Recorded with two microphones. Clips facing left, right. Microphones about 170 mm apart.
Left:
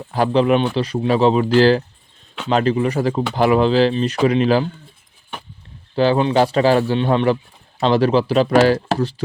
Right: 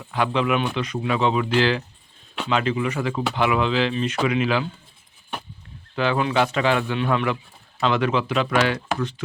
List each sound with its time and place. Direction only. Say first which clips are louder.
0.0 s speech: left 6 dB; 35° left (ahead or behind)
5.9 s speech: left 6 dB; 30° left (ahead or behind)